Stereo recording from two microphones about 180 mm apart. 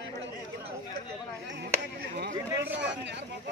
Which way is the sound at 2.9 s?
80° right.